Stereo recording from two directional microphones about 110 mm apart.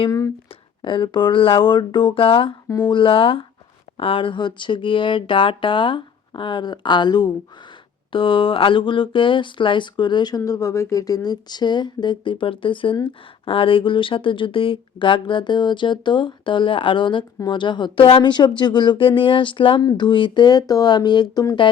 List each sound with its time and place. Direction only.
0.8 s speech: 45° left (ahead or behind)
2.6 s speech: 35° left (ahead or behind)
2.9 s speech: 55° left (ahead or behind)
8.1 s speech: 50° left (ahead or behind)